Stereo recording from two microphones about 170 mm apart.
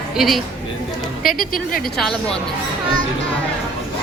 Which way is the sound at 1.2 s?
55° left (ahead or behind).